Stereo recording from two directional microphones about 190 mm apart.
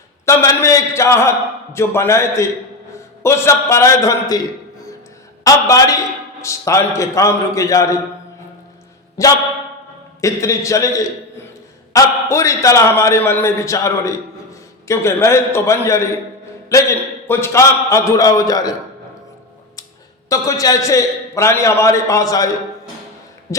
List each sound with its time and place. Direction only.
0.3 s a man's voice: 15° left (ahead or behind)
5.4 s a man's voice: 15° left (ahead or behind)
9.2 s a man's voice: 15° left (ahead or behind)
17.2 s a man's voice: 15° left (ahead or behind)
20.3 s a man's voice: 20° left (ahead or behind)
23.5 s a man's voice: 15° left (ahead or behind)